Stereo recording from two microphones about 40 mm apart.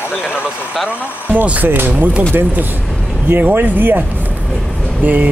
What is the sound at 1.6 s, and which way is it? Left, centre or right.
Speech, right.